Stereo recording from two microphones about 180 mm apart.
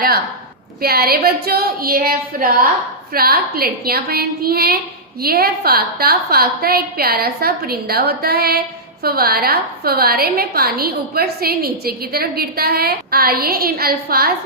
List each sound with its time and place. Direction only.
0.8 s a woman's voice: 55° right (ahead or behind)